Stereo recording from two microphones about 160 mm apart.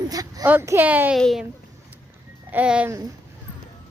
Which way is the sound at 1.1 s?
Centre (ahead or behind).